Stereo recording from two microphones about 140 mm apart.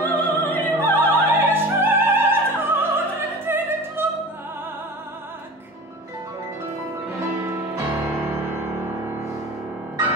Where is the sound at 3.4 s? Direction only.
15° right (ahead or behind).